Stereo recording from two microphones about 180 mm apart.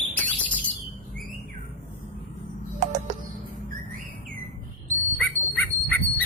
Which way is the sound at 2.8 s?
40° right (ahead or behind).